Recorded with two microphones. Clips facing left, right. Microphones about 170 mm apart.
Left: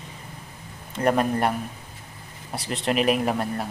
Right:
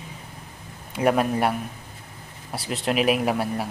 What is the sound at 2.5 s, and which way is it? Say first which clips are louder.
Speech: even; 5° right (ahead or behind).